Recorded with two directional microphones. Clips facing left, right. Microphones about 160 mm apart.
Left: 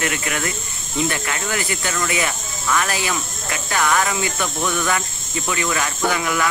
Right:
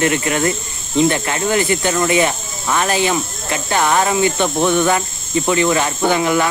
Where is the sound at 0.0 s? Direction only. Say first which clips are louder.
Right 8 dB; 30° right (ahead or behind).